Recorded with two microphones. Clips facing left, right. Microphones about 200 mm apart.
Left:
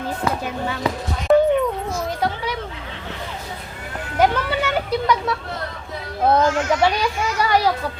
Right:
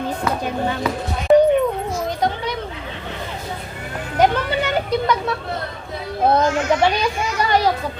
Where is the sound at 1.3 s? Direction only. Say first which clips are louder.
Right 2 dB; 15° right (ahead or behind).